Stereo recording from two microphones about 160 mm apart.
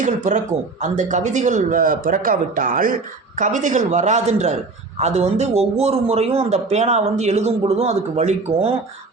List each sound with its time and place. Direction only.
0.0 s speech: 50° right (ahead or behind)